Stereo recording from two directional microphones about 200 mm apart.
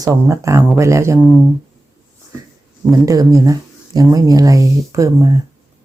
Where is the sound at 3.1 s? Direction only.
15° right (ahead or behind).